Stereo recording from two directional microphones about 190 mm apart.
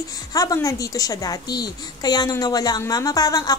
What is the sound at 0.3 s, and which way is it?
A woman's voice, 20° left (ahead or behind).